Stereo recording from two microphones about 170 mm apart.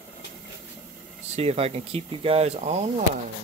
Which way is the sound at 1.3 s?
40° right (ahead or behind).